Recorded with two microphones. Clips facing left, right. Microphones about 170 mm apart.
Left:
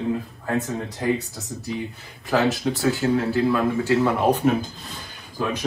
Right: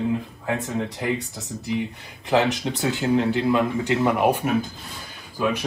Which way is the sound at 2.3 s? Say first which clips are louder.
Even; 20° right (ahead or behind).